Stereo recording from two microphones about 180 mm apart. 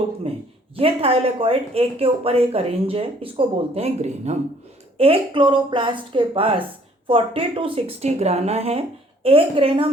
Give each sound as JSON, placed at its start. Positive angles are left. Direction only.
{"t": 0.8, "sound": "a woman's voice", "side_deg": -35}